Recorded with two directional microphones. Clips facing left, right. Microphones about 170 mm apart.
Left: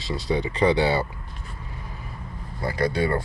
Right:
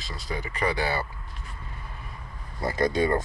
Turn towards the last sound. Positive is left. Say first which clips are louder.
# even
turn(degrees=-20)  # may be behind; listen again after turning